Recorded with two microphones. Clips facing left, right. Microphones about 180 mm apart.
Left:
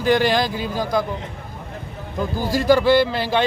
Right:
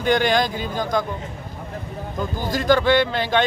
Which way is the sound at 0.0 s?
5° left (ahead or behind).